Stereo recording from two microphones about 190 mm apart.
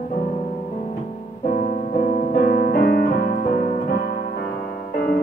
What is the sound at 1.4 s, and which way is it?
Piano, 40° left (ahead or behind).